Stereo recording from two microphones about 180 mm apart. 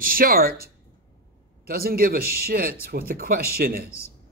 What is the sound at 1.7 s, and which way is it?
Speech, 55° right (ahead or behind).